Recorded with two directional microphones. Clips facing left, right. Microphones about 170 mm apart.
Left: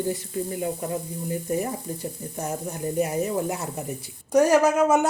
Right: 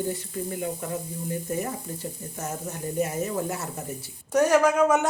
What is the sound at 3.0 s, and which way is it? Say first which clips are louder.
Speech: left 2 dB; 15° left (ahead or behind).